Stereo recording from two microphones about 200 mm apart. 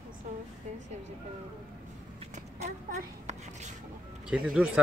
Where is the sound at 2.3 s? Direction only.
35° right (ahead or behind).